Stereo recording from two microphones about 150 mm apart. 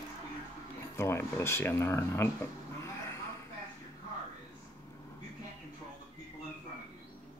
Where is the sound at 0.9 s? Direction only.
20° left (ahead or behind).